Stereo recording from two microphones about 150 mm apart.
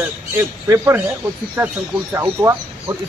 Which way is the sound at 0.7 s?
15° right (ahead or behind).